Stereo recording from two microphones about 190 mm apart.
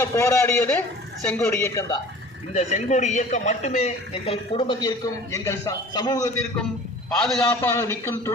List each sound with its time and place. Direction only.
0.0 s a man's voice: 15° left (ahead or behind)
2.5 s a man's voice: 40° left (ahead or behind); by 6.2 s 20° left (ahead or behind)
7.2 s a man's voice: 5° left (ahead or behind)
7.7 s a man's voice: 15° left (ahead or behind)